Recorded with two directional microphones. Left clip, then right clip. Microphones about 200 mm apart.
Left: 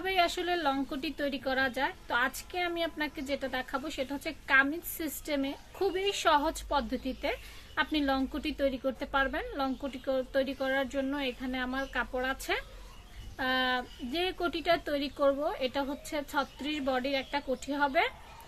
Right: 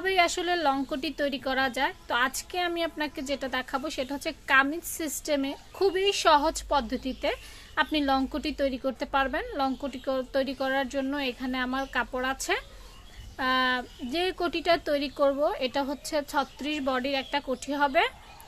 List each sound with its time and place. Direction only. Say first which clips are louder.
0.0 s a woman's voice: right 4 dB; 30° right (ahead or behind)